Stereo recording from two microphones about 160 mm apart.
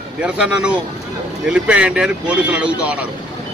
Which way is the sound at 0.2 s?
5° right (ahead or behind).